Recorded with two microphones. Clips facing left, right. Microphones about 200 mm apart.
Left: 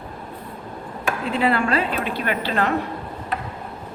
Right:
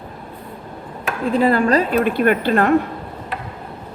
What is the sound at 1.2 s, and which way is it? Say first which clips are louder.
A woman's voice: right 6 dB; 45° right (ahead or behind).